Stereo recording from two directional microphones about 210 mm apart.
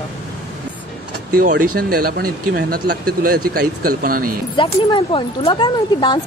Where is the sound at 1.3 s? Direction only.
45° right (ahead or behind).